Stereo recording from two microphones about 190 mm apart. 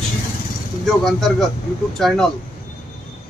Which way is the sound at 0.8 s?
Centre (ahead or behind).